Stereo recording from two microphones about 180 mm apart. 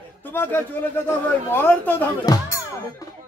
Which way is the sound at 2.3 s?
20° left (ahead or behind).